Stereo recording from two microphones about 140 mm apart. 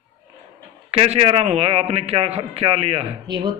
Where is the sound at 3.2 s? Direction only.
30° right (ahead or behind).